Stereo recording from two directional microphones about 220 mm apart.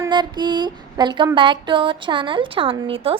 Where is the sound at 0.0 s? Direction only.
20° right (ahead or behind).